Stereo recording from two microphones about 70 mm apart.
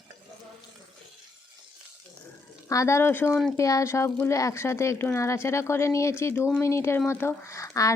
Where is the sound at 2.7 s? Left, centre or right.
Left.